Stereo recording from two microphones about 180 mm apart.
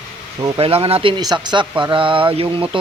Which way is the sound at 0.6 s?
30° right (ahead or behind).